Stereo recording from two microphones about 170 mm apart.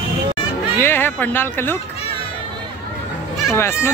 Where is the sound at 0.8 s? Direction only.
15° left (ahead or behind).